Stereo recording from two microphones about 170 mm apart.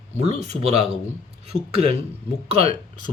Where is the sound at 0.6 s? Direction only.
40° right (ahead or behind).